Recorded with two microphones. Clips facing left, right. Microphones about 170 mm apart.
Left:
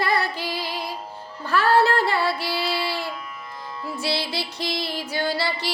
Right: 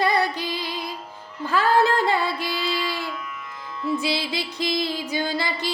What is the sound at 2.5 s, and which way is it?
Child singing, 30° left (ahead or behind).